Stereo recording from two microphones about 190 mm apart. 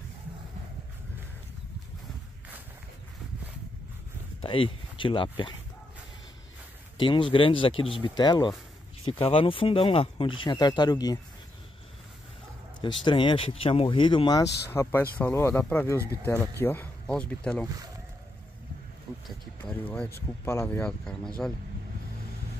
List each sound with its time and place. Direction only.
4.4 s speech: 25° left (ahead or behind)
7.0 s speech: 25° left (ahead or behind)
12.8 s speech: 25° left (ahead or behind); by 17.6 s 5° left (ahead or behind)
19.6 s speech: 10° left (ahead or behind)